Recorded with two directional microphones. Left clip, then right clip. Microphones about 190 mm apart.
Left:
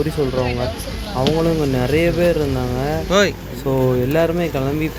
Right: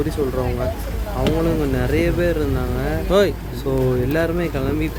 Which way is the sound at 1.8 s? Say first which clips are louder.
Left 5 dB; 15° left (ahead or behind).